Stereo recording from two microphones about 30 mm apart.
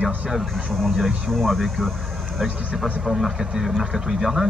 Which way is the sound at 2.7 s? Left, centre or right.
Centre.